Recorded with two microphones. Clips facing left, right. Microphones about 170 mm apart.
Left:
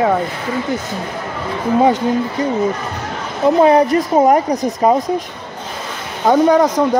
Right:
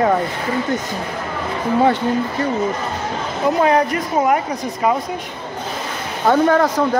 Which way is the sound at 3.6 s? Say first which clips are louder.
Left 5 dB; 30° left (ahead or behind).